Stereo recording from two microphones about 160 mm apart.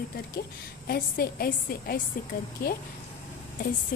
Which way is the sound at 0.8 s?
70° left (ahead or behind).